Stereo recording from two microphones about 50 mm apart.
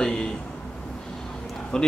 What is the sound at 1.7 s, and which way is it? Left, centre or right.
Speech, centre.